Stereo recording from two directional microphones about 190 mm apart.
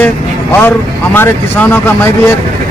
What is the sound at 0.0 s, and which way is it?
Speech, 10° left (ahead or behind).